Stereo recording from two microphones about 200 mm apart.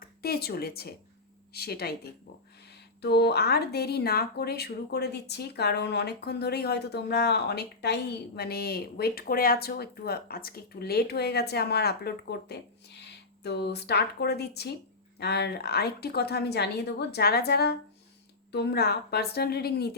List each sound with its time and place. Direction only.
0.0 s speech: 50° left (ahead or behind)
3.0 s speech: 55° left (ahead or behind)